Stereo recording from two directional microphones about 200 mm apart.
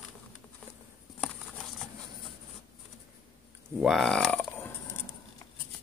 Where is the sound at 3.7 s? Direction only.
Centre (ahead or behind).